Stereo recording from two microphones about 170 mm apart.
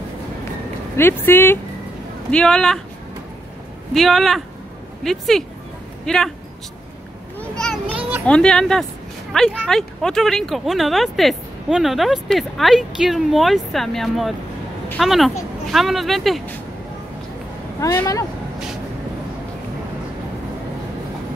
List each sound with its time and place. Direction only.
0.9 s speech: 15° left (ahead or behind)
3.9 s speech: centre (ahead or behind)
7.3 s children playing: 5° left (ahead or behind)
8.3 s speech: 5° left (ahead or behind)
17.7 s speech: 20° left (ahead or behind)